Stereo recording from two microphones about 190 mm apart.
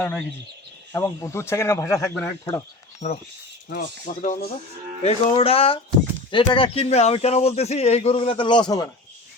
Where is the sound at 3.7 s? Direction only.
45° left (ahead or behind).